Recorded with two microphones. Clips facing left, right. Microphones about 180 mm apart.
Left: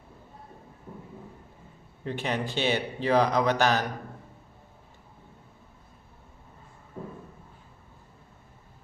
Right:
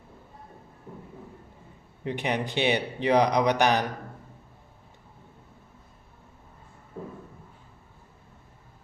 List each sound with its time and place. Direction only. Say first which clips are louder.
2.0 s speech: right 2 dB; 15° right (ahead or behind)